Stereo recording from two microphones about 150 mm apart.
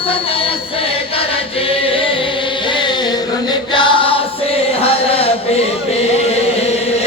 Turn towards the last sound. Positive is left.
turn(degrees=40)  # may be behind; listen again after turning